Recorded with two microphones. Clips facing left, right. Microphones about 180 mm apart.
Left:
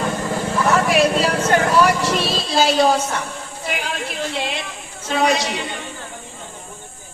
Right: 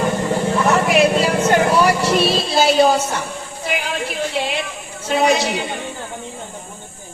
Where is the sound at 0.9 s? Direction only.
10° right (ahead or behind).